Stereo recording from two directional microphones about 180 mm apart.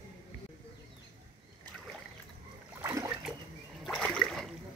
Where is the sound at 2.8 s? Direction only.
15° right (ahead or behind).